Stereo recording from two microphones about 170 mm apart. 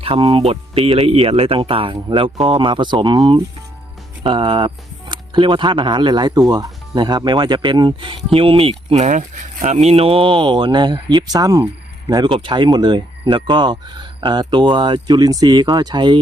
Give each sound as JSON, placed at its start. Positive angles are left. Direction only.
{"t": 0.0, "sound": "speech", "side_deg": -30}